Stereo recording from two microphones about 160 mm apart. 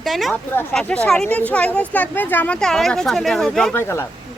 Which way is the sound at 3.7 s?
15° left (ahead or behind).